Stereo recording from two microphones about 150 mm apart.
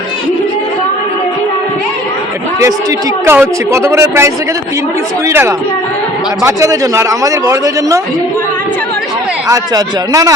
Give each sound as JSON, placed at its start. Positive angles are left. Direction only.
{"t": 3.2, "sound": "speech", "side_deg": -15}
{"t": 5.3, "sound": "speech", "side_deg": -15}
{"t": 9.5, "sound": "speech", "side_deg": -20}